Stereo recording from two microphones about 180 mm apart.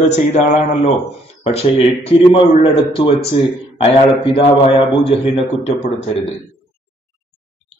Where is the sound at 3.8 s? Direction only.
35° left (ahead or behind).